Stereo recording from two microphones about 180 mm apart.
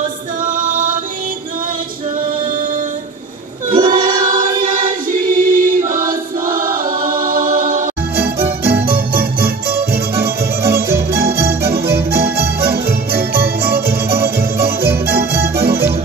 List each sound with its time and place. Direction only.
0.4 s music: 45° right (ahead or behind)
3.7 s choir: 50° right (ahead or behind)
8.6 s music: 55° right (ahead or behind)